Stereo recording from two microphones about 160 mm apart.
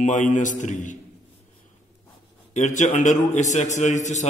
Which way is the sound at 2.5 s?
50° left (ahead or behind).